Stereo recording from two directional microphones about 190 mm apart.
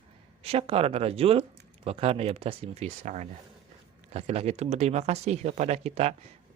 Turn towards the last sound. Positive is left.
turn(degrees=-35)  # may be behind; listen again after turning